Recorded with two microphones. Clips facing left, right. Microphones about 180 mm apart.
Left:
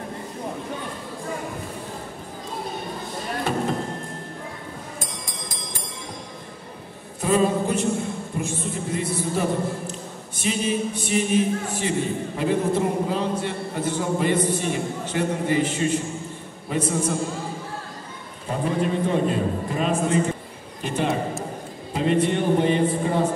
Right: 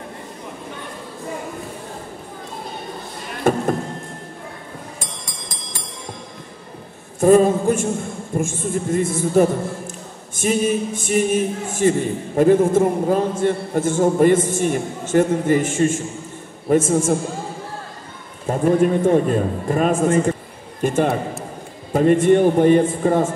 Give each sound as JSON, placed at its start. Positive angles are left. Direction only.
{"t": 3.4, "sound": "a sound", "side_deg": -50}
{"t": 7.2, "sound": "a man's voice", "side_deg": -45}
{"t": 18.5, "sound": "a man's voice", "side_deg": -50}